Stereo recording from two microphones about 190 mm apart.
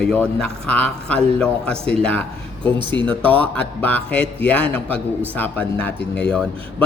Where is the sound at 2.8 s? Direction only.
25° right (ahead or behind).